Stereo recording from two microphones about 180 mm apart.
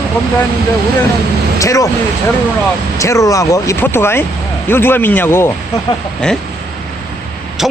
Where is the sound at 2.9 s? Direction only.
15° left (ahead or behind).